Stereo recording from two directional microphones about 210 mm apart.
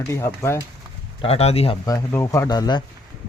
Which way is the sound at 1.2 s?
30° left (ahead or behind).